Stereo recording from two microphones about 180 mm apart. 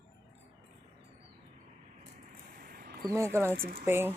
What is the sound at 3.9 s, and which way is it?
Speech, 10° right (ahead or behind).